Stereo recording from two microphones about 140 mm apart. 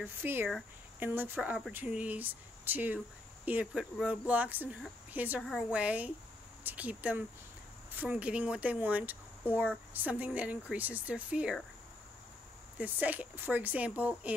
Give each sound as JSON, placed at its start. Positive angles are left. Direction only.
{"t": 0.0, "sound": "speech", "side_deg": -15}
{"t": 12.7, "sound": "speech", "side_deg": -10}